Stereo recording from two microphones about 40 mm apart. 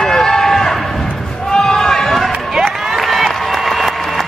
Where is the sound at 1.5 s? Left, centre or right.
Centre.